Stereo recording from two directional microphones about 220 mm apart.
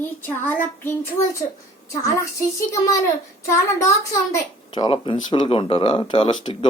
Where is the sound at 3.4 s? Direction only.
15° left (ahead or behind).